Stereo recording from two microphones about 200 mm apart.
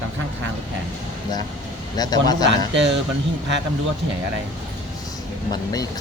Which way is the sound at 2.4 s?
60° right (ahead or behind).